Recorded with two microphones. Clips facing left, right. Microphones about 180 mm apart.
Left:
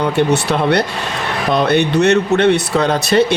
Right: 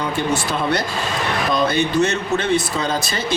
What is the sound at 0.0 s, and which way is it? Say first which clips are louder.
Speech: left 6 dB; 65° left (ahead or behind).